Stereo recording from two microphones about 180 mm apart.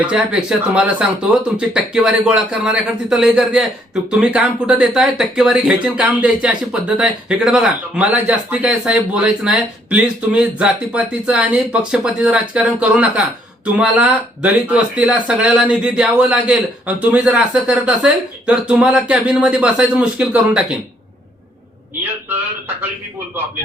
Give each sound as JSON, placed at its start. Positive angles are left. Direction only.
{"t": 0.1, "sound": "speech", "side_deg": -5}
{"t": 22.3, "sound": "speech", "side_deg": -10}